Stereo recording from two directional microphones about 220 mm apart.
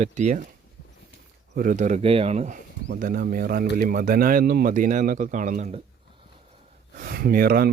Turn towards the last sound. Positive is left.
turn(degrees=-45)  # may be behind; listen again after turning